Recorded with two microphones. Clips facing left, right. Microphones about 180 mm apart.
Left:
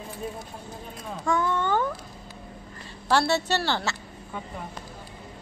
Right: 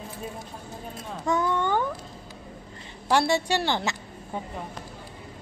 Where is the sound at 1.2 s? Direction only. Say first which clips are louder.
Even; 20° right (ahead or behind).